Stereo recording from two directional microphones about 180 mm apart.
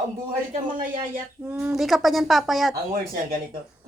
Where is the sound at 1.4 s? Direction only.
10° right (ahead or behind).